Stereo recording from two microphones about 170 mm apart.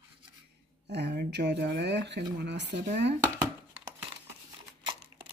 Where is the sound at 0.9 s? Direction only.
70° right (ahead or behind); by 3.1 s 85° right.